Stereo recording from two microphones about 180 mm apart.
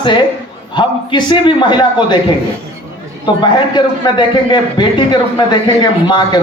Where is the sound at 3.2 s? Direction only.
25° left (ahead or behind).